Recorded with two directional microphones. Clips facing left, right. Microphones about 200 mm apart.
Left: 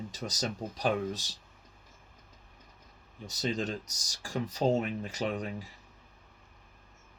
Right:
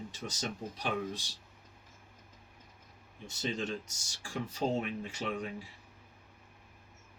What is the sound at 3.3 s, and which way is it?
Speech, 35° left (ahead or behind).